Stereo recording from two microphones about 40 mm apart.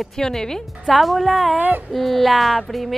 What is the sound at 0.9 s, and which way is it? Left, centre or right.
A woman's voice, centre.